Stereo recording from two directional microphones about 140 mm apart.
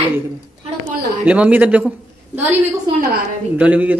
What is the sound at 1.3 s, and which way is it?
Speech, 10° right (ahead or behind).